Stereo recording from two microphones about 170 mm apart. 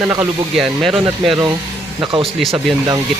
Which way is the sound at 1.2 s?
30° right (ahead or behind).